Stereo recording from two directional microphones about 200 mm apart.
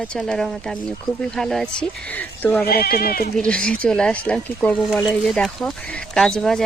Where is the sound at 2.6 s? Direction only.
50° left (ahead or behind).